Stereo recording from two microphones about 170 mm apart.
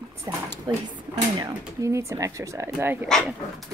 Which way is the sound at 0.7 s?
25° right (ahead or behind).